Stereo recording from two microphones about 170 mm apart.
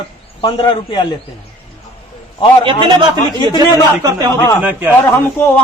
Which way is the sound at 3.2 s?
20° left (ahead or behind).